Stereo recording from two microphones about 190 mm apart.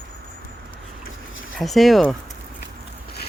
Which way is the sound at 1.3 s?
90° left.